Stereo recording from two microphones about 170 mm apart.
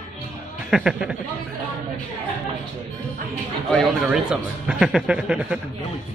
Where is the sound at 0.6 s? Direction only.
Centre (ahead or behind).